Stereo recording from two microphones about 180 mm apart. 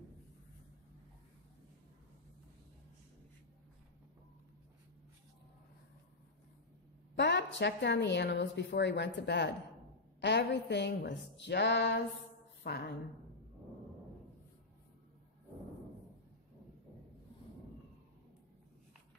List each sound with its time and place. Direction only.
7.2 s a woman's voice: 75° left (ahead or behind)